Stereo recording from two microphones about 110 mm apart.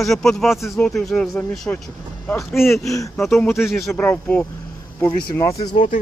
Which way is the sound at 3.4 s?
20° left (ahead or behind).